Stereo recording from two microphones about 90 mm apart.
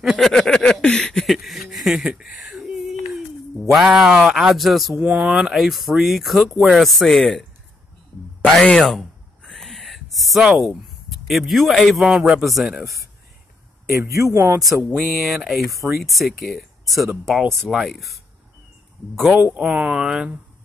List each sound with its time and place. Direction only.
0.0 s speech: 5° right (ahead or behind)
0.3 s a sound: 5° left (ahead or behind)
3.7 s speech: 5° right (ahead or behind)
4.9 s speech: 15° right (ahead or behind); by 7.4 s centre (ahead or behind)
8.5 s a sound: 5° left (ahead or behind)
12.0 s speech: 10° right (ahead or behind)
13.8 s a man's voice: 35° right (ahead or behind)
15.0 s speech: centre (ahead or behind)
19.3 s speech: 20° right (ahead or behind)